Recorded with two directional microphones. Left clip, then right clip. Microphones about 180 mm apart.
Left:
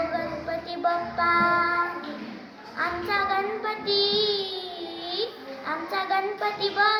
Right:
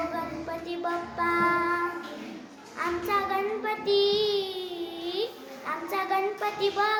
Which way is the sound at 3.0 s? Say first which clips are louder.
Left 2 dB; 20° right (ahead or behind).